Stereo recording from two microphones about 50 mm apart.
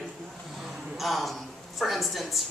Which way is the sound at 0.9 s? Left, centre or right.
Centre.